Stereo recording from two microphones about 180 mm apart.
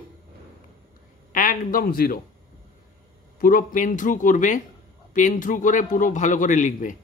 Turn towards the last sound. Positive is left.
turn(degrees=45)  # may be behind; listen again after turning